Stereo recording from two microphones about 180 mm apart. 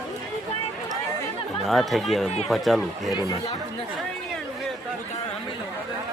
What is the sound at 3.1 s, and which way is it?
Speech, 20° left (ahead or behind).